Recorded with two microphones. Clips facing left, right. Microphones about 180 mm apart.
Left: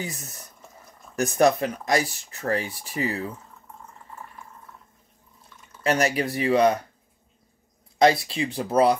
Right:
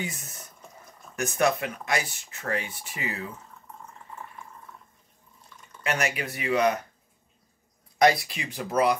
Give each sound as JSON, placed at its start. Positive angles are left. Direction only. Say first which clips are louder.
{"t": 0.0, "sound": "speech", "louder": "left 1 dB", "side_deg": 35}
{"t": 0.4, "sound": "drip", "louder": "even", "side_deg": 0}
{"t": 1.1, "sound": "speech", "louder": "left 5 dB", "side_deg": 35}
{"t": 5.6, "sound": "drip", "louder": "right 1 dB", "side_deg": 0}
{"t": 5.9, "sound": "speech", "louder": "left 6 dB", "side_deg": 35}
{"t": 8.0, "sound": "speech", "louder": "left 3 dB", "side_deg": 25}